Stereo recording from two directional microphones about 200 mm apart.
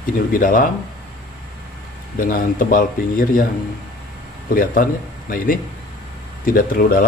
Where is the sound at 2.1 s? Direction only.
45° left (ahead or behind).